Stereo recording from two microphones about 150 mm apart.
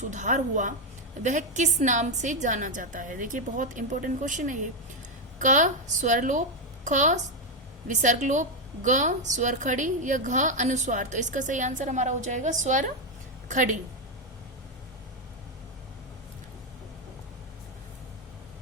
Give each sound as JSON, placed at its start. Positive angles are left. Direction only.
{"t": 0.0, "sound": "a woman's voice", "side_deg": -55}